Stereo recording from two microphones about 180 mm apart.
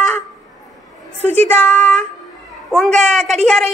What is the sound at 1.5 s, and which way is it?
Speech, 5° left (ahead or behind).